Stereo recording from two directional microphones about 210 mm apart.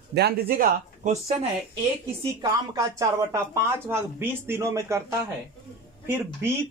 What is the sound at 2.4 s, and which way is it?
A man's voice, 15° right (ahead or behind).